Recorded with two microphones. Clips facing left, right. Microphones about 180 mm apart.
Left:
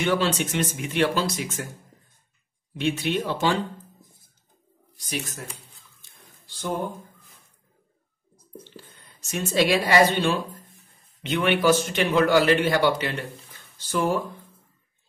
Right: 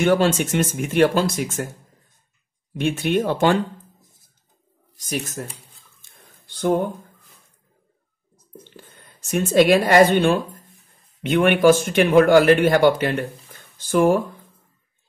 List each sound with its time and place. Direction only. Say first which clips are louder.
0.0 s speech: right 6 dB; 50° right (ahead or behind)
2.7 s speech: right 4 dB; 50° right (ahead or behind)
4.9 s speech: right 5 dB; 45° right (ahead or behind)
6.0 s a sound: right 2 dB; 60° right (ahead or behind)
8.7 s a woman's voice: right 1 dB; 50° right (ahead or behind)